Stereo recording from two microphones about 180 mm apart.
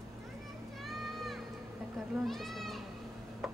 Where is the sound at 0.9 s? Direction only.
Centre (ahead or behind).